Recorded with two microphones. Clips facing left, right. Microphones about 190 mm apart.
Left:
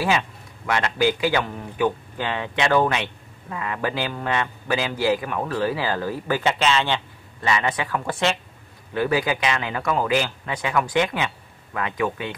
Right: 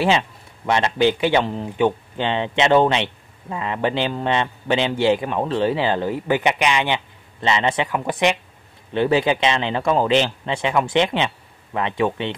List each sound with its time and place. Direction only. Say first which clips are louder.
0.7 s a man's voice: right 3 dB; 25° right (ahead or behind)